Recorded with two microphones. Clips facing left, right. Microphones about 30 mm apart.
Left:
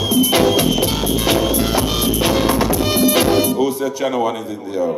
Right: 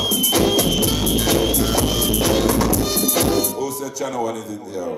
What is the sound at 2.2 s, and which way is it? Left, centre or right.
Music, left.